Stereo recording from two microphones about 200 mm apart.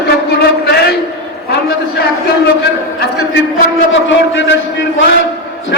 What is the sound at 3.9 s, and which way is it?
A man's voice, 70° left (ahead or behind).